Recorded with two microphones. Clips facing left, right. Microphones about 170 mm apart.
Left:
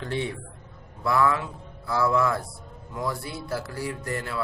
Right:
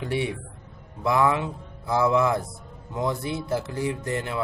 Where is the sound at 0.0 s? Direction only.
10° right (ahead or behind).